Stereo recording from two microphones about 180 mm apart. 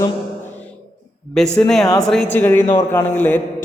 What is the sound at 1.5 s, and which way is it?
A man's voice, 5° left (ahead or behind).